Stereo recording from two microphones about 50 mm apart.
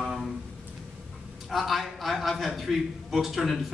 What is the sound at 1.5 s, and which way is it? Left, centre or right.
A man's voice, centre.